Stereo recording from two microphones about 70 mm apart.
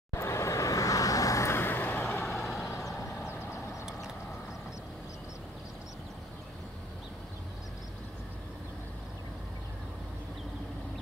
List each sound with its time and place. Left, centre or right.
0.1 s vehicle: left
1.5 s vehicle: left
2.3 s vehicle: centre
3.2 s vehicle: left